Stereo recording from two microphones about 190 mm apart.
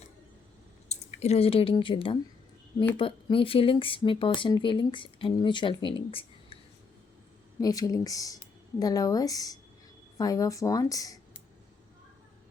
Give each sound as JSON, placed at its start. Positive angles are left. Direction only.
{"t": 0.9, "sound": "speech", "side_deg": 35}
{"t": 7.6, "sound": "speech", "side_deg": 20}